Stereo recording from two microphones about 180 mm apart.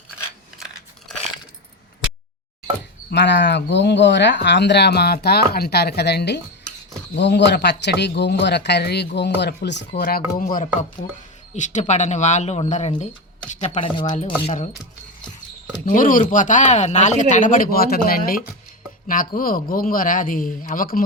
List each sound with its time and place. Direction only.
3.1 s speech: 75° left (ahead or behind)
10.0 s speech: 55° left (ahead or behind); by 12.9 s 40° left (ahead or behind)
14.0 s speech: 40° left (ahead or behind)
15.9 s speech: 50° left (ahead or behind)